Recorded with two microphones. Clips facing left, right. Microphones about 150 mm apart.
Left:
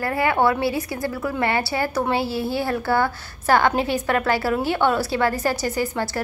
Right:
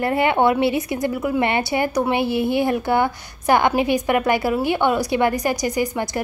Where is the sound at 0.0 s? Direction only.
20° right (ahead or behind).